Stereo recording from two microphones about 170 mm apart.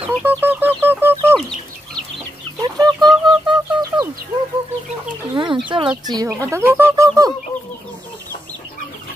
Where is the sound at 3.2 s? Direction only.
25° right (ahead or behind).